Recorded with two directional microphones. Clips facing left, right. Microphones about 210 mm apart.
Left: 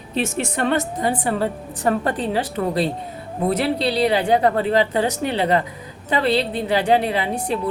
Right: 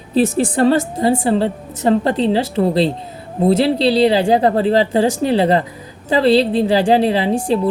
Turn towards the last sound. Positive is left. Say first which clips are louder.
# right 6 dB
turn(degrees=-30)  # may be behind; listen again after turning